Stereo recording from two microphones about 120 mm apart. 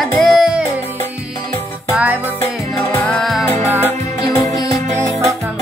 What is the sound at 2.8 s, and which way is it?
Music, 20° left (ahead or behind).